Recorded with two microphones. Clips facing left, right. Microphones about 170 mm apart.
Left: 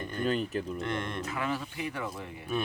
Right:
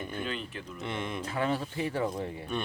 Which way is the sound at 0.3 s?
40° left (ahead or behind).